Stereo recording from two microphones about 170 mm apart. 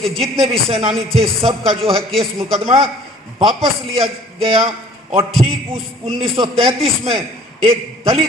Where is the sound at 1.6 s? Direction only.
Centre (ahead or behind).